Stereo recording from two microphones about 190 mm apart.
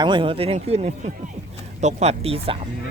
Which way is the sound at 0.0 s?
25° right (ahead or behind).